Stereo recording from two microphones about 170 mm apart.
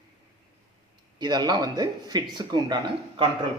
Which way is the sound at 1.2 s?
25° right (ahead or behind).